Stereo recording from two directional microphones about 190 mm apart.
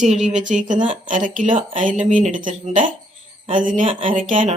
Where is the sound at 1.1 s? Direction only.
45° right (ahead or behind).